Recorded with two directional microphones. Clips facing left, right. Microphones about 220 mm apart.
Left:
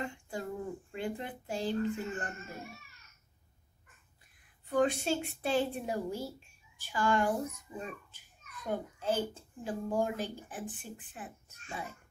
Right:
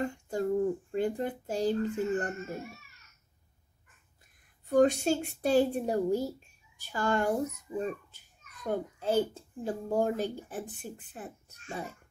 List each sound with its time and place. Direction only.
0.0 s a sound: 45° right (ahead or behind)
0.9 s a child's voice: 40° right (ahead or behind)
4.6 s a woman's voice: 45° right (ahead or behind)